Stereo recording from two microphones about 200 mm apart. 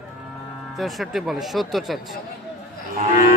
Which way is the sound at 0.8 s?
Centre (ahead or behind).